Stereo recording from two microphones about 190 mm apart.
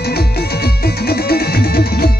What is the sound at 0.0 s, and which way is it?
Music, 55° left (ahead or behind).